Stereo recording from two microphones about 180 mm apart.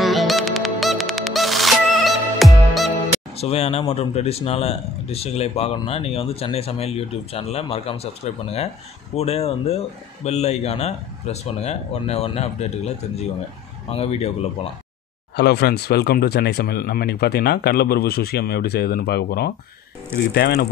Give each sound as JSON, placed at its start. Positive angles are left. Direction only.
{"t": 0.0, "sound": "music", "side_deg": 0}
{"t": 3.3, "sound": "speech", "side_deg": 35}
{"t": 15.3, "sound": "speech", "side_deg": 65}